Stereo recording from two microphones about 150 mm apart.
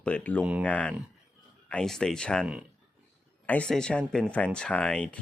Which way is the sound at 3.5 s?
5° left (ahead or behind).